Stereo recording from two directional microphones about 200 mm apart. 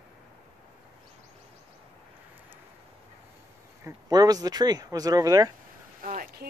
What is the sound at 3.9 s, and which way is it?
Speech, 20° right (ahead or behind).